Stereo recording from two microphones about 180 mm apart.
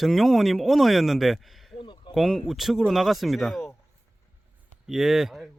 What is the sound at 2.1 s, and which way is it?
Speech, centre (ahead or behind).